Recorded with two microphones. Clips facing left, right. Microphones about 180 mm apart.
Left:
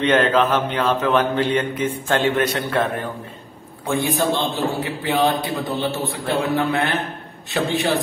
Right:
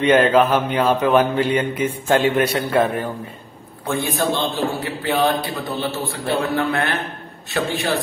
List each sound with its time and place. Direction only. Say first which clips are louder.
0.0 s mantra: right 3 dB; 10° right (ahead or behind)
3.8 s a man's voice: left 1 dB; 15° left (ahead or behind)